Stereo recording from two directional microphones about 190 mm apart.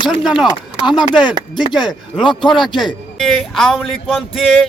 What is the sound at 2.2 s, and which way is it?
Speech, 25° left (ahead or behind).